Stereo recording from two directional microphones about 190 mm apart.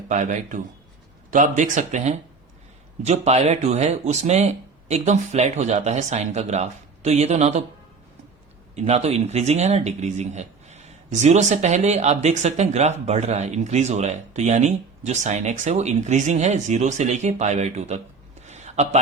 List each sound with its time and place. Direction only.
0.1 s speech: 40° right (ahead or behind)
8.7 s speech: 35° right (ahead or behind)
18.4 s a sound: 35° right (ahead or behind)